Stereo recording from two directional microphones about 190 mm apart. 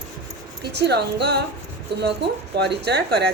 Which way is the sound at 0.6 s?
60° right (ahead or behind).